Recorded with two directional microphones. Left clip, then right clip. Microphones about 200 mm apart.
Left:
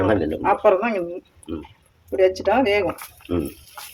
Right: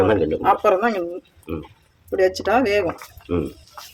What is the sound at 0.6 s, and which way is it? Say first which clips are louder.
Speech: even; 40° right (ahead or behind).